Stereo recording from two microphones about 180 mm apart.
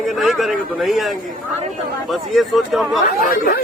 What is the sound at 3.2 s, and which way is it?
Speech, 50° left (ahead or behind).